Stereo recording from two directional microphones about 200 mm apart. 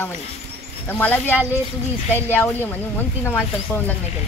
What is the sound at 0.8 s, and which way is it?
Speech, 10° left (ahead or behind).